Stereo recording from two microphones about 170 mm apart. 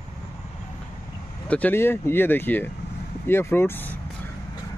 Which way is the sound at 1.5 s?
10° left (ahead or behind).